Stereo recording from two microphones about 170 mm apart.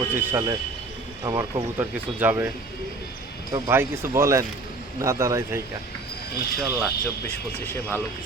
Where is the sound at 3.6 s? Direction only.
15° right (ahead or behind).